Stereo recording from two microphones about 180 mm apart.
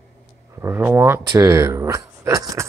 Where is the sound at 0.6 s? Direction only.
15° right (ahead or behind).